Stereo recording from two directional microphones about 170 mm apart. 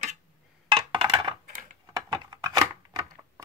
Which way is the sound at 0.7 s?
30° right (ahead or behind).